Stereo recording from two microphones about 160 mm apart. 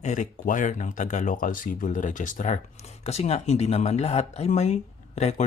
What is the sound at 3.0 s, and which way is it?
Speech, 40° left (ahead or behind).